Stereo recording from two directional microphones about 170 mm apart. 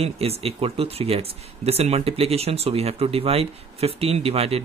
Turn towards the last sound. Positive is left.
turn(degrees=-35)  # may be behind; listen again after turning